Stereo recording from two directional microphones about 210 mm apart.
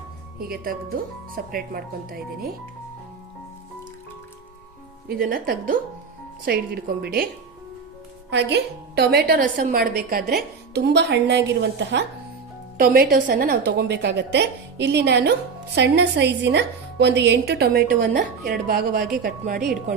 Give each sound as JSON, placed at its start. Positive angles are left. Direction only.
{"t": 0.3, "sound": "a woman's voice", "side_deg": -45}
{"t": 5.0, "sound": "a woman's voice", "side_deg": -45}
{"t": 8.3, "sound": "a woman's voice", "side_deg": -55}
{"t": 12.7, "sound": "a woman's voice", "side_deg": -45}
{"t": 13.7, "sound": "a woman's voice", "side_deg": -55}